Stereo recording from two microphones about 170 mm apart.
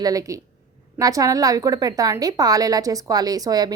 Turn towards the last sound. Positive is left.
turn(degrees=-20)  # may be behind; listen again after turning